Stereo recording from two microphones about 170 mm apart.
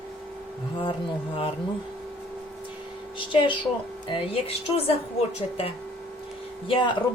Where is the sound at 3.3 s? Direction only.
30° left (ahead or behind).